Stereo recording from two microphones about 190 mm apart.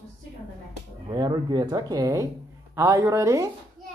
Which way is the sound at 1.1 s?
20° right (ahead or behind).